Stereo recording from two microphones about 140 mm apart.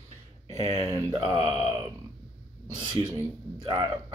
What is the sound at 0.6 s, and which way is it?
Speech, 25° right (ahead or behind).